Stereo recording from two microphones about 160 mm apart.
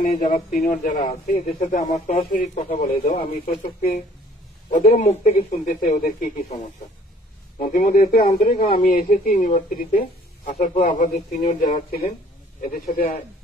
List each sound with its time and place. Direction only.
0.0 s speech: 60° left (ahead or behind)
4.7 s speech: 50° left (ahead or behind)
7.5 s speech: 55° left (ahead or behind)
8.3 s speech: 40° left (ahead or behind)
8.8 s speech: 55° left (ahead or behind)
10.5 s speech: 50° left (ahead or behind)
12.7 s a man's voice: 70° left (ahead or behind)